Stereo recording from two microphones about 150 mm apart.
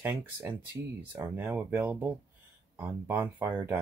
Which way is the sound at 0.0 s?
15° right (ahead or behind).